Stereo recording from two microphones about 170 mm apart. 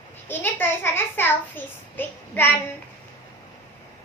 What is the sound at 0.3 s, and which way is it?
A child's voice, 10° left (ahead or behind).